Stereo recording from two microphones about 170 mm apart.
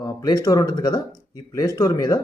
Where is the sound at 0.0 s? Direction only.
20° left (ahead or behind).